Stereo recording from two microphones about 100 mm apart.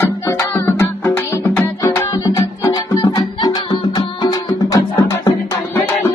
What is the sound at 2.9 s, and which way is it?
Music, 45° left (ahead or behind).